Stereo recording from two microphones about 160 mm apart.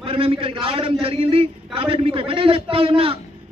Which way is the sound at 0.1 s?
35° right (ahead or behind).